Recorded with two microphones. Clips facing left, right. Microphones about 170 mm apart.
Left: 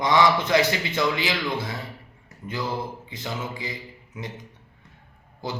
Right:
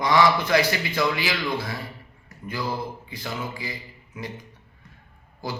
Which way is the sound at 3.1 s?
20° left (ahead or behind).